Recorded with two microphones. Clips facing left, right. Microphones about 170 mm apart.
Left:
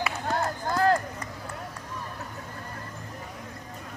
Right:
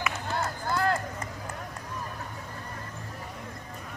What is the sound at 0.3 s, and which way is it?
Run, 40° left (ahead or behind).